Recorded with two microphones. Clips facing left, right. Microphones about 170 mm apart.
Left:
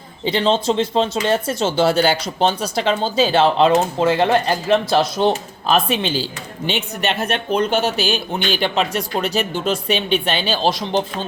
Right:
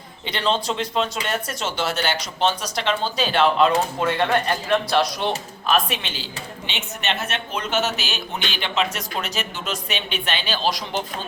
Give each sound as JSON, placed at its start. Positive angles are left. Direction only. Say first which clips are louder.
{"t": 0.3, "sound": "speech", "louder": "left 6 dB", "side_deg": 30}